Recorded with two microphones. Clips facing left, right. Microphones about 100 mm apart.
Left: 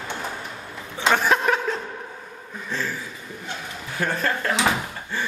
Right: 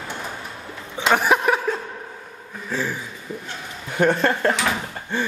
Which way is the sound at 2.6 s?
10° right (ahead or behind).